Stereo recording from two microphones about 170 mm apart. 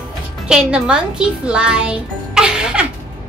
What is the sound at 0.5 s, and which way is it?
A child's voice, 5° right (ahead or behind).